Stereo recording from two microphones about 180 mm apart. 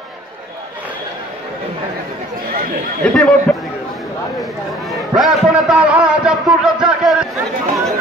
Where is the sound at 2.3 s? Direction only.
50° right (ahead or behind).